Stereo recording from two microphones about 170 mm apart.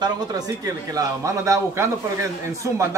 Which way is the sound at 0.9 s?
20° right (ahead or behind).